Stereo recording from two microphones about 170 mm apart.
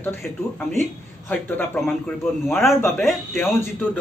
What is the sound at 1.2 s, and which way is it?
Speech, 10° left (ahead or behind).